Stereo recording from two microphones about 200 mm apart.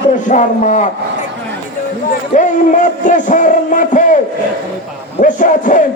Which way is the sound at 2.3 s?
40° left (ahead or behind).